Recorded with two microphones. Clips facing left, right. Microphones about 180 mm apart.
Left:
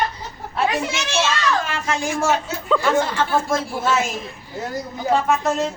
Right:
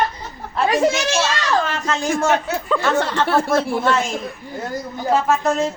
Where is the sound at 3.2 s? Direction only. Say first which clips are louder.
Right 3 dB; 70° right (ahead or behind).